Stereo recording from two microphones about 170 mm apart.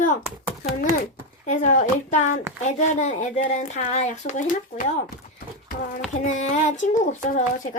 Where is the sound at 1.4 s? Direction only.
45° left (ahead or behind).